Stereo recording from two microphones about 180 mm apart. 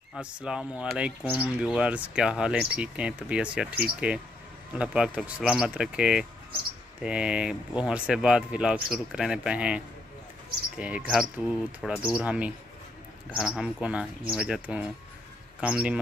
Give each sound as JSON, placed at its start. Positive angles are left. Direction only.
{"t": 0.1, "sound": "speech", "side_deg": -5}